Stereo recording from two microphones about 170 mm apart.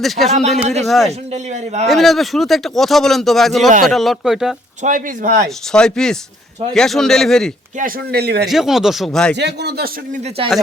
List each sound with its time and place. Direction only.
0.0 s a man's voice: centre (ahead or behind)
1.3 s a man's voice: 40° right (ahead or behind)
1.9 s a man's voice: centre (ahead or behind)
4.8 s speech: 50° right (ahead or behind)
5.7 s a man's voice: 5° left (ahead or behind)
7.8 s speech: 60° right (ahead or behind)
8.4 s a man's voice: centre (ahead or behind)
9.3 s speech: 85° right
10.4 s a man's voice: 30° right (ahead or behind)